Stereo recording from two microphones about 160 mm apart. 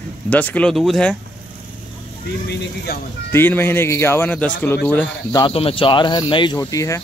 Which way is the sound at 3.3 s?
15° left (ahead or behind).